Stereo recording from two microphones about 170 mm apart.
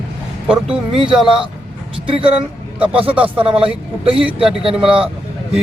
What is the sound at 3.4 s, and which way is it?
A man's voice, 30° right (ahead or behind).